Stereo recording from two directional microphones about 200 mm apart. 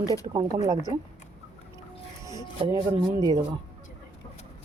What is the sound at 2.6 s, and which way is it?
Speech, 20° right (ahead or behind).